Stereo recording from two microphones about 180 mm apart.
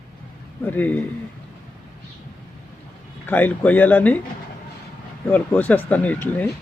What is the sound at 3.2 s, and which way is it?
Speech, 10° left (ahead or behind).